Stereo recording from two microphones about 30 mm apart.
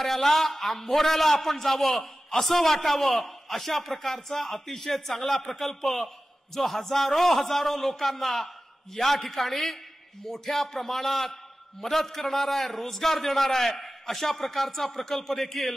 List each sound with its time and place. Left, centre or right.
0.0 s a man's voice: centre